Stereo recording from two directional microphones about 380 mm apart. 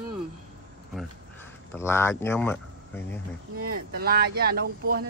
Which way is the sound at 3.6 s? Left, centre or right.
Right.